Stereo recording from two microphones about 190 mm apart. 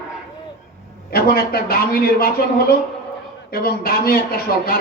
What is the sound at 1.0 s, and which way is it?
A man's voice, 55° left (ahead or behind).